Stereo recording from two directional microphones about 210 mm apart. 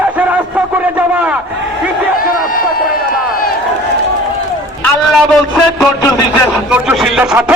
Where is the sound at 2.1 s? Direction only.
45° left (ahead or behind).